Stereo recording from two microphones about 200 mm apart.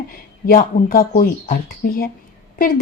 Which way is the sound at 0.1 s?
45° left (ahead or behind).